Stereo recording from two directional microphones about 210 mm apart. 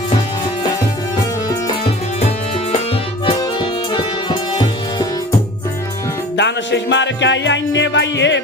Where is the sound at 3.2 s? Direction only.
25° left (ahead or behind).